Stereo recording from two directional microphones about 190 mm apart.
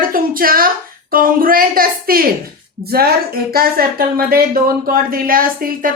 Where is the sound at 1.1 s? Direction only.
50° right (ahead or behind).